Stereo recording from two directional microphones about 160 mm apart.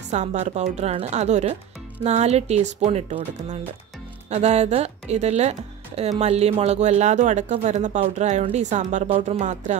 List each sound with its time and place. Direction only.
0.1 s speech: 45° right (ahead or behind)